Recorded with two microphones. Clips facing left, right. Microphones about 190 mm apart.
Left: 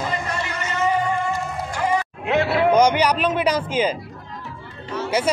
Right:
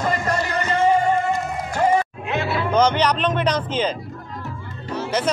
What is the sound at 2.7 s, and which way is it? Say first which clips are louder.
Speech: even; 10° left (ahead or behind).